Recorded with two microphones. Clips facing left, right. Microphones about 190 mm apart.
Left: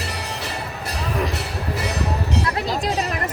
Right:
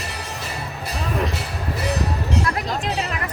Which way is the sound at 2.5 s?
35° left (ahead or behind).